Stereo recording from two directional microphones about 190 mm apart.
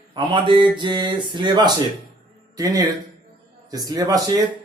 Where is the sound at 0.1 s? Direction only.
25° right (ahead or behind).